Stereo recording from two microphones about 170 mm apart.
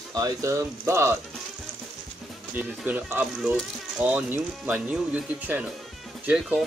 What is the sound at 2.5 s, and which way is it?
Speech, 10° right (ahead or behind).